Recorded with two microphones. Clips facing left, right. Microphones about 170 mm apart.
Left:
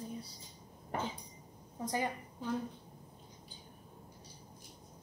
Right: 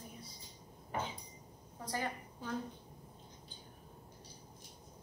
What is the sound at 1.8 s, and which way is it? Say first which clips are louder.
Speech: left 4 dB; 15° left (ahead or behind).